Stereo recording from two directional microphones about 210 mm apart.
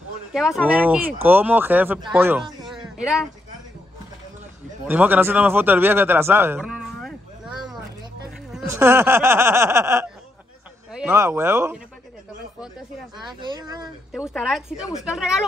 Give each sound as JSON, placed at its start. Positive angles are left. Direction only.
{"t": 0.3, "sound": "speech", "side_deg": -5}
{"t": 2.6, "sound": "a sound", "side_deg": 0}
{"t": 4.8, "sound": "a man's voice", "side_deg": -10}
{"t": 13.3, "sound": "speech", "side_deg": -20}
{"t": 14.1, "sound": "speech", "side_deg": -5}